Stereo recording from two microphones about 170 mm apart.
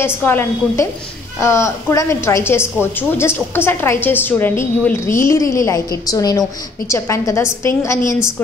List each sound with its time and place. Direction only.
0.0 s a woman's voice: 10° left (ahead or behind)